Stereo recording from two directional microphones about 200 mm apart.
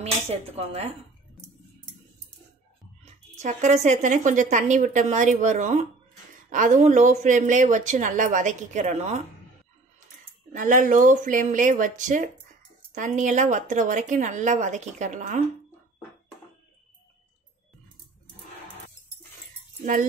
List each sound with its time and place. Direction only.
0.0 s speech: 30° right (ahead or behind)
3.0 s speech: 35° right (ahead or behind)
10.5 s speech: 40° right (ahead or behind)
19.8 s speech: 40° right (ahead or behind)